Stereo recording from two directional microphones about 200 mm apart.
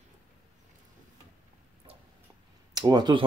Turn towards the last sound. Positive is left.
turn(degrees=-20)  # may be behind; listen again after turning